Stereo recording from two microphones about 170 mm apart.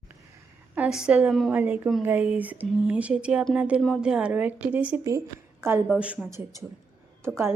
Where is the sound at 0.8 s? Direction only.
5° right (ahead or behind).